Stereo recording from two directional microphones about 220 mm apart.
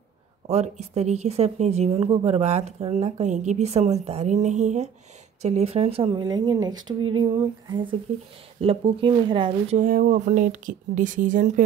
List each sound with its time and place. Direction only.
0.5 s speech: 30° right (ahead or behind)
9.8 s speech: 40° right (ahead or behind)